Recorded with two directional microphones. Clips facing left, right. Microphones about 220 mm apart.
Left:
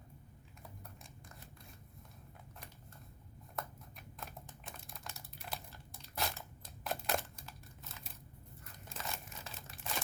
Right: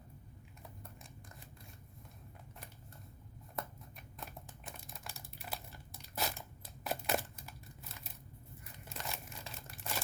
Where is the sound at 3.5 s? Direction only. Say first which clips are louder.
Right 1 dB; centre (ahead or behind).